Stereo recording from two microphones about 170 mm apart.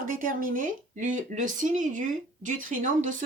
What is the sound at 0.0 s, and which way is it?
Speech, 55° right (ahead or behind).